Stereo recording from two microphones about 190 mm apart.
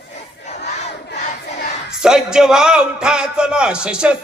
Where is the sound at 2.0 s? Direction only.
5° right (ahead or behind).